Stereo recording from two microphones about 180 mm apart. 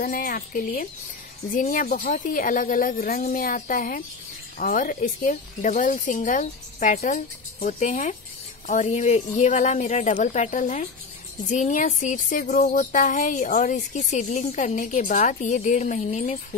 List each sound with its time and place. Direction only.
0.0 s speech: 50° left (ahead or behind)